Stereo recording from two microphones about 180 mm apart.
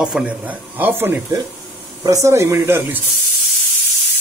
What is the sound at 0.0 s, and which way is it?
Speech, 5° right (ahead or behind).